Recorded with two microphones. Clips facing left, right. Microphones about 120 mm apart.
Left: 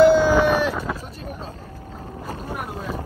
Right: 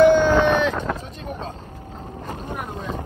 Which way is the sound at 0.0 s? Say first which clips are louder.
Even; 5° left (ahead or behind).